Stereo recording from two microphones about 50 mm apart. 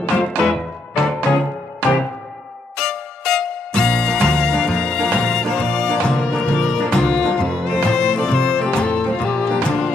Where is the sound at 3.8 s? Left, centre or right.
Centre.